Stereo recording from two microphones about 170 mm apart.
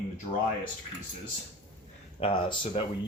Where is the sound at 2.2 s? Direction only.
30° left (ahead or behind).